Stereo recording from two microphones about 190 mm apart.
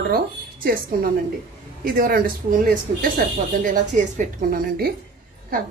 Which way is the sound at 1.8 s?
45° right (ahead or behind).